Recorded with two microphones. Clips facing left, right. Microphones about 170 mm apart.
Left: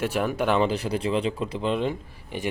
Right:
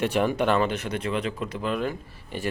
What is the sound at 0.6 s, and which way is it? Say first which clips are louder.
Speech: left 2 dB; 30° left (ahead or behind).